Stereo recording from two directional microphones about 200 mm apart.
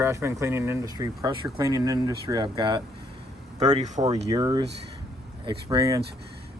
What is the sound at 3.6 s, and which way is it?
Speech, 35° right (ahead or behind).